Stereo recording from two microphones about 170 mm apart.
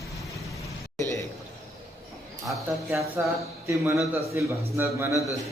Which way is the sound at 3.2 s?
10° right (ahead or behind).